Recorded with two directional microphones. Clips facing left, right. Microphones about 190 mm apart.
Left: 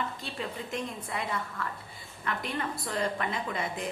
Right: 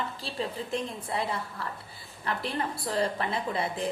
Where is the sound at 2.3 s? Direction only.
35° right (ahead or behind).